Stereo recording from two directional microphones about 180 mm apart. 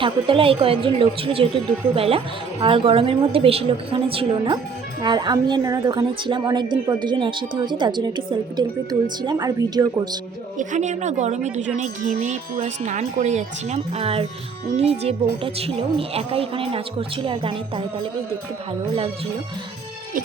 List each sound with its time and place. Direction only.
0.0 s a woman's voice: 30° right (ahead or behind)
10.6 s speech: 40° right (ahead or behind)